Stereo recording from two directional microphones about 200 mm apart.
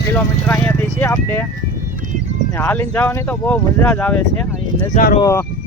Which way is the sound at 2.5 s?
10° left (ahead or behind).